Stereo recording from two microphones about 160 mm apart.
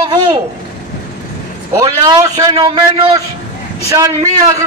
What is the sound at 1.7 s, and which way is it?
A man's voice, 25° right (ahead or behind).